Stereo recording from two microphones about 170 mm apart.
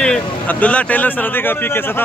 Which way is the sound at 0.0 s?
5° left (ahead or behind).